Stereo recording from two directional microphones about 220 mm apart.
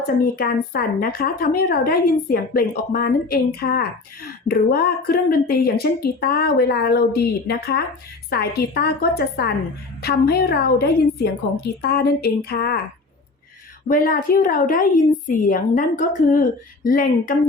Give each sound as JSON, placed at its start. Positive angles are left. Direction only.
{"t": 0.3, "sound": "a woman's voice", "side_deg": 45}
{"t": 13.8, "sound": "a woman's voice", "side_deg": 40}